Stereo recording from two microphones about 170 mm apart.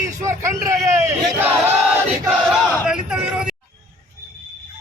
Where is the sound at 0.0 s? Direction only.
20° right (ahead or behind).